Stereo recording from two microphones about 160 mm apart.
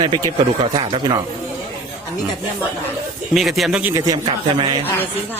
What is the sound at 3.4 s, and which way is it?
Speech, centre (ahead or behind).